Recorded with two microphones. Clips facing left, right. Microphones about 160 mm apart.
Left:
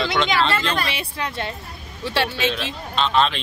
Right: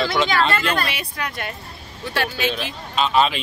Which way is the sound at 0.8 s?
25° left (ahead or behind).